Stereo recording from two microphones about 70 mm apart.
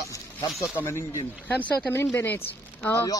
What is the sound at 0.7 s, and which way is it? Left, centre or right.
Speech, left.